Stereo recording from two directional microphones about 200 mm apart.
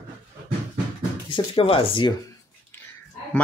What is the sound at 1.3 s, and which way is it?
Speech, 25° left (ahead or behind).